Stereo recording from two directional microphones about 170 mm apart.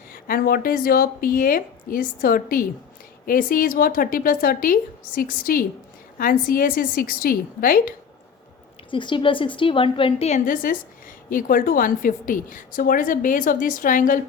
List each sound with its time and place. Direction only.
0.1 s a woman's voice: 60° left (ahead or behind)
8.9 s a woman's voice: 30° left (ahead or behind); by 14.2 s 50° left (ahead or behind)